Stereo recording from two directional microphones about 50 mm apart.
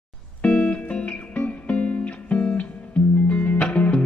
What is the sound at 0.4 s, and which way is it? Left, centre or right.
Music, left.